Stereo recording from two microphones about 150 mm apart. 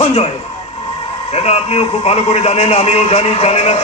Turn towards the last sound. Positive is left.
turn(degrees=45)  # may be behind; listen again after turning